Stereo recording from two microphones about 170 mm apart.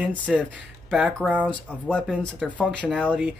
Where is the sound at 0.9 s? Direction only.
5° right (ahead or behind).